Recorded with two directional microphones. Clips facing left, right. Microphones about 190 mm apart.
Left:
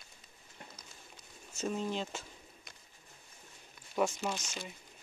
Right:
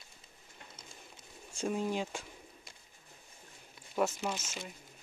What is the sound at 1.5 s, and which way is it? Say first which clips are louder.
Speech: right 2 dB; 10° right (ahead or behind).